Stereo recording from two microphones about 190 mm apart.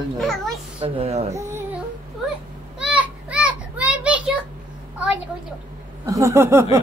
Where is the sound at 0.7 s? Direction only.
30° right (ahead or behind).